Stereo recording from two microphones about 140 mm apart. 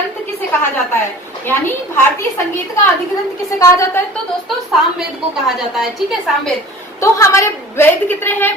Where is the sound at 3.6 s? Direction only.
20° left (ahead or behind).